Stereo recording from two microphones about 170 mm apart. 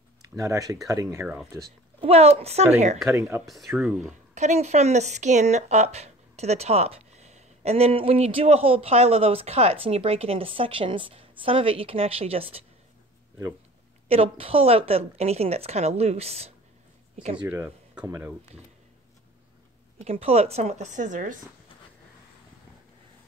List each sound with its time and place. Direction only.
0.2 s speech: 20° right (ahead or behind)
2.0 s speech: 35° right (ahead or behind)
3.1 s speech: 15° right (ahead or behind)
3.4 s speech: centre (ahead or behind)
4.4 s speech: 40° right (ahead or behind)
14.0 s speech: 35° right (ahead or behind)
17.4 s speech: 10° right (ahead or behind)
20.1 s speech: 40° right (ahead or behind)